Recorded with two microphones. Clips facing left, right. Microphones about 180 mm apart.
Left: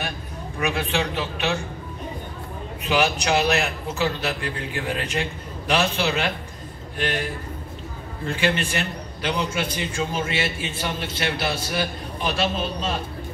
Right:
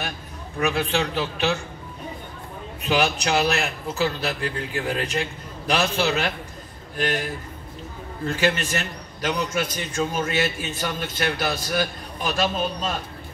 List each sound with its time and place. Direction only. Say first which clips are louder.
0.6 s a man's voice: right 1 dB; 35° right (ahead or behind)
2.8 s a man's voice: even; 35° right (ahead or behind)
8.3 s a man's voice: right 1 dB; 40° right (ahead or behind)